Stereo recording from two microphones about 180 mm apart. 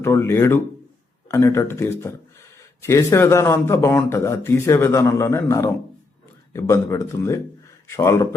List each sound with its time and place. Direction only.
0.0 s speech: 15° left (ahead or behind)